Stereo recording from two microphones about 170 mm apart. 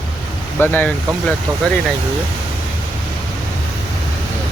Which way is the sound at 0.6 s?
10° left (ahead or behind).